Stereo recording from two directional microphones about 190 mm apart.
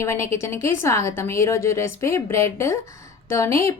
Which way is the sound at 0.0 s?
15° left (ahead or behind).